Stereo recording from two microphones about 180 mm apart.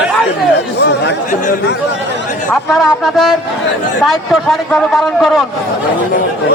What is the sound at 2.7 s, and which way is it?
A man's voice, centre (ahead or behind).